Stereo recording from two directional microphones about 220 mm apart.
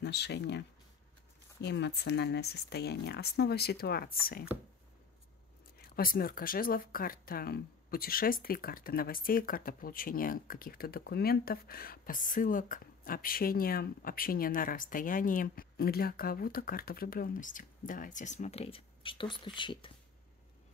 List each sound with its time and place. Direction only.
0.0 s speech: 50° left (ahead or behind)
5.8 s speech: 40° left (ahead or behind); by 19.9 s 20° left (ahead or behind)